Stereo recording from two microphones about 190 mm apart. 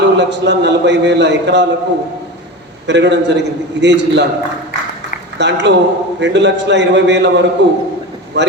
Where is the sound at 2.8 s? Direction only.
65° right (ahead or behind).